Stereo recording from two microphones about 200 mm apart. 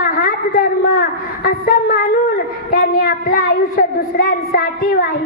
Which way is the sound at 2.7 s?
45° left (ahead or behind).